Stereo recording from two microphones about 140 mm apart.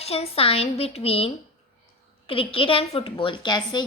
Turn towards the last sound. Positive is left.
turn(degrees=30)  # may be behind; listen again after turning